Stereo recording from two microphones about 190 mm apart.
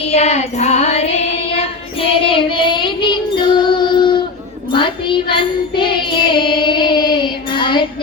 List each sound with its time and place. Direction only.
0.0 s music: 35° left (ahead or behind)